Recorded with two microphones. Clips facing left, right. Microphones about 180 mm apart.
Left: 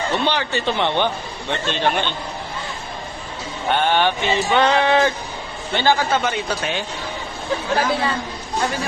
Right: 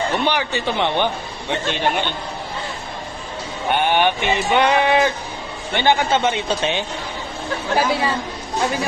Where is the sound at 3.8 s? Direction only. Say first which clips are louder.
Right 1 dB; 15° right (ahead or behind).